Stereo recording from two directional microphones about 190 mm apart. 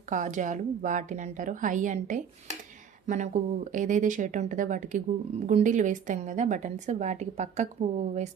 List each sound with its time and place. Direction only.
0.1 s a woman's voice: 40° right (ahead or behind)